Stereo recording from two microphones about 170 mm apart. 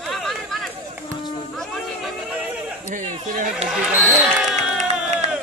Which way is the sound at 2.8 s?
45° right (ahead or behind).